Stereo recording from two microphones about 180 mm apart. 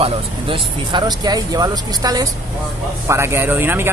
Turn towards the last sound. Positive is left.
turn(degrees=-10)  # may be behind; listen again after turning